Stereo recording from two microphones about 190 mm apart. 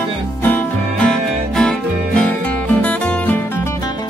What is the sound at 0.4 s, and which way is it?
Music, 10° left (ahead or behind).